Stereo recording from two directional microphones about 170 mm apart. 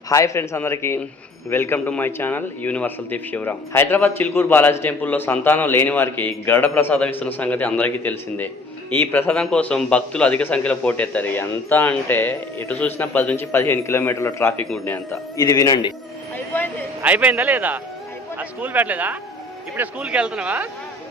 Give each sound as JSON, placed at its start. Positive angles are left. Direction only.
{"t": 0.1, "sound": "a man's voice", "side_deg": 15}
{"t": 17.0, "sound": "speech", "side_deg": -10}